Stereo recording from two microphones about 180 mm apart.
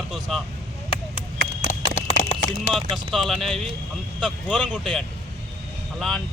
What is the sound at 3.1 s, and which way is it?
Speech, centre (ahead or behind).